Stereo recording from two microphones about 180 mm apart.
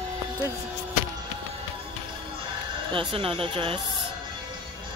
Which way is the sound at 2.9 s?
30° right (ahead or behind).